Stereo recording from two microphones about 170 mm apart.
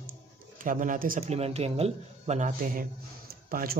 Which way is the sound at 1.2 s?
40° right (ahead or behind).